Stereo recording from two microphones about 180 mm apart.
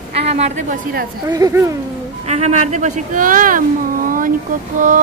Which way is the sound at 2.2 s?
40° right (ahead or behind).